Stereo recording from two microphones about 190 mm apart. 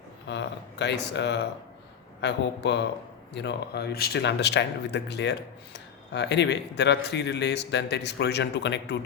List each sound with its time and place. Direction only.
0.3 s speech: 65° left (ahead or behind)